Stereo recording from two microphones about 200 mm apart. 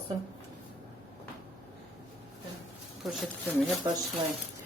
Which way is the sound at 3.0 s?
Centre (ahead or behind).